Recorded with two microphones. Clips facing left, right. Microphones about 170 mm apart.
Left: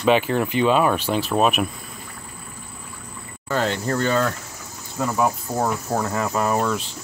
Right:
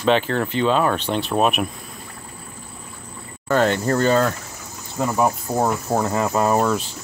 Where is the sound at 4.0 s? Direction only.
35° right (ahead or behind).